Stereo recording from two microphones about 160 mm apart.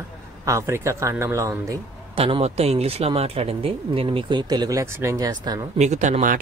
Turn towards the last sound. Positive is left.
turn(degrees=-50)  # may be behind; listen again after turning